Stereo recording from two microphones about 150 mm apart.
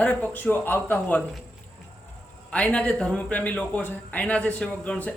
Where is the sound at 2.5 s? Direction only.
10° left (ahead or behind).